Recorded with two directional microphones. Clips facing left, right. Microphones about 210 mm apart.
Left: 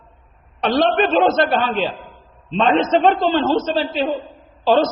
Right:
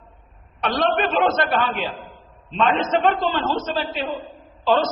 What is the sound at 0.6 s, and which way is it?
A man's voice, 30° left (ahead or behind).